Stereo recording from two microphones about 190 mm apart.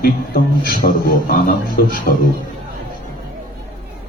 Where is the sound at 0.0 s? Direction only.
55° left (ahead or behind).